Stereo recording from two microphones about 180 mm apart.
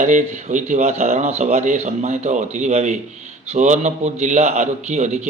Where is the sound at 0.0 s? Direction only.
45° right (ahead or behind).